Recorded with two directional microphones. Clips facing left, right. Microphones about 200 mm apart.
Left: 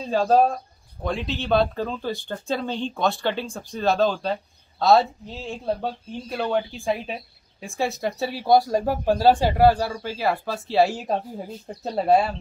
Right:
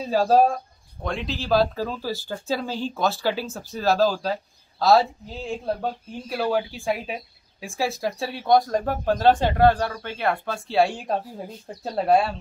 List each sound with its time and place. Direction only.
0.0 s speech: 5° right (ahead or behind)